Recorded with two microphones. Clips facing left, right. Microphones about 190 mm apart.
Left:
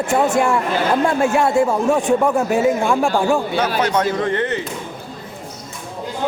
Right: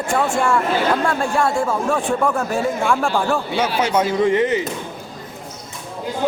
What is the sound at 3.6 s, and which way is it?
Speech, 10° right (ahead or behind).